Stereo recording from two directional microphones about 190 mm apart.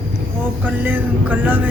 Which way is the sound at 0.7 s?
10° right (ahead or behind).